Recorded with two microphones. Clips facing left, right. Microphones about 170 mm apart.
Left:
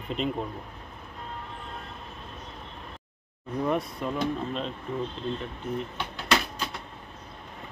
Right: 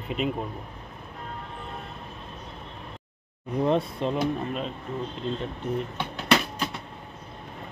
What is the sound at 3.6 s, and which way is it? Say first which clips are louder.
Speech: right 4 dB; 25° right (ahead or behind).